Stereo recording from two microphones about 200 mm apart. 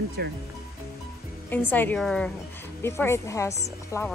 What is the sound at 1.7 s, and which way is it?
A woman's voice, 10° left (ahead or behind).